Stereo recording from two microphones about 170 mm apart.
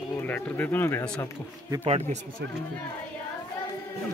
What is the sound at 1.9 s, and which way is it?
Speech, 35° right (ahead or behind).